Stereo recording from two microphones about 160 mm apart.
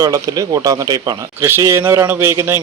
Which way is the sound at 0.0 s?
20° right (ahead or behind).